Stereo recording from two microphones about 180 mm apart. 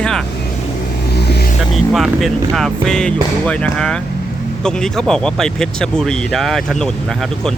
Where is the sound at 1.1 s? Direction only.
65° left (ahead or behind).